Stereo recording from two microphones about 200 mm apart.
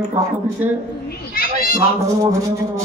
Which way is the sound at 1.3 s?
45° left (ahead or behind).